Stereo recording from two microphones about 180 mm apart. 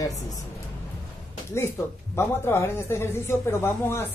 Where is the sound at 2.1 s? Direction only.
15° left (ahead or behind).